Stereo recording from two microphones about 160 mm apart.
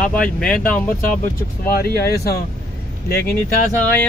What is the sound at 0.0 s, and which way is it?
Speech, 5° left (ahead or behind).